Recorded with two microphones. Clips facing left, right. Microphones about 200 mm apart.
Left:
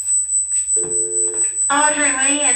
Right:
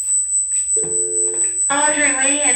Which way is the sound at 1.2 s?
15° right (ahead or behind).